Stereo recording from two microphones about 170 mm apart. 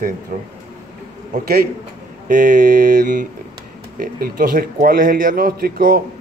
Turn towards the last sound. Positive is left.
turn(degrees=-60)  # may be behind; listen again after turning